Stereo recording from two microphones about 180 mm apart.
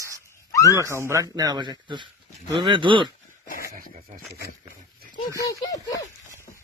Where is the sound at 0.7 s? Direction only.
15° right (ahead or behind).